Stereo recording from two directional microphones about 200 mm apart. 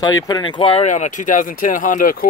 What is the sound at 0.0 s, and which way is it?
Speech, 15° left (ahead or behind).